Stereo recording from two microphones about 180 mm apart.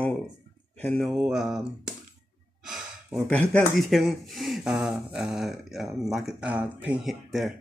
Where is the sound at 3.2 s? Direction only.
5° left (ahead or behind).